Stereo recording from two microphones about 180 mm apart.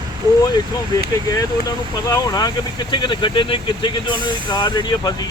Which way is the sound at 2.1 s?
20° left (ahead or behind).